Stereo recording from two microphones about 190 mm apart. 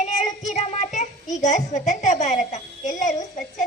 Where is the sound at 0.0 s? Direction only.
40° left (ahead or behind).